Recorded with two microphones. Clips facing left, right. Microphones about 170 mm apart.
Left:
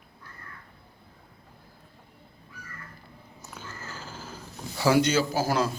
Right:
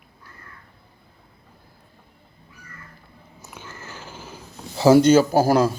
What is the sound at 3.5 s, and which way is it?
Cat, 20° right (ahead or behind).